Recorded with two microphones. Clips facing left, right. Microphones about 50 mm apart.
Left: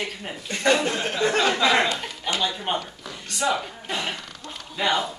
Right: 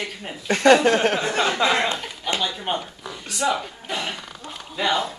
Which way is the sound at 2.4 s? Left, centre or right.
Centre.